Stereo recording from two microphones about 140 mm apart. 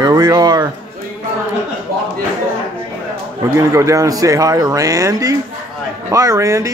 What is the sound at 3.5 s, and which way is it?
Speech, 25° right (ahead or behind).